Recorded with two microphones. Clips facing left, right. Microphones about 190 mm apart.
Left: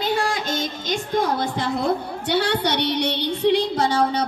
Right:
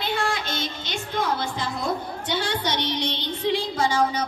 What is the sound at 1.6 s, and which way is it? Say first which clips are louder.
A woman's voice: left 5 dB; 60° left (ahead or behind).